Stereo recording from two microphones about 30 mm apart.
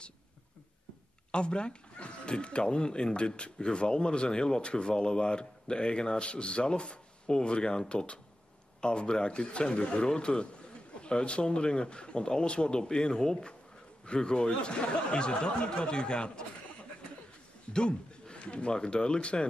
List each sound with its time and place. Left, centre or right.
1.3 s a man's voice: left
17.7 s a man's voice: left